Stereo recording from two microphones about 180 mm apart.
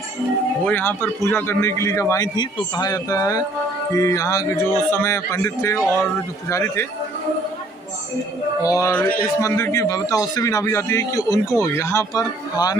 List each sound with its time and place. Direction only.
0.7 s a man's voice: 10° left (ahead or behind)
8.6 s a man's voice: 20° left (ahead or behind)